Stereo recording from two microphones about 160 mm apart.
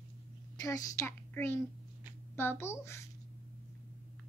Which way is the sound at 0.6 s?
20° left (ahead or behind).